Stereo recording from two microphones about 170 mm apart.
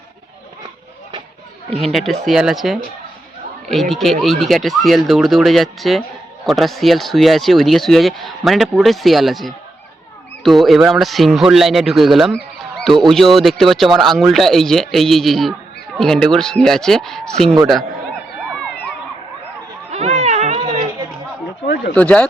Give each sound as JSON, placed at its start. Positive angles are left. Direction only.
{"t": 1.8, "sound": "speech", "side_deg": 0}
{"t": 19.9, "sound": "a sound", "side_deg": -40}
{"t": 21.9, "sound": "speech", "side_deg": 10}